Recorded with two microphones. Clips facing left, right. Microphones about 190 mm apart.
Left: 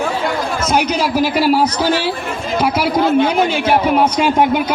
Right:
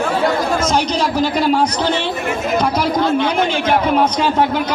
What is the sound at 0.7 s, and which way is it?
A man's voice, 10° left (ahead or behind).